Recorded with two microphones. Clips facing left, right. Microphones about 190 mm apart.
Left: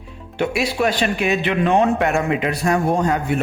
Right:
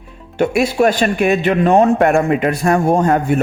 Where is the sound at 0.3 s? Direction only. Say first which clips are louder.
Right 6 dB; 45° right (ahead or behind).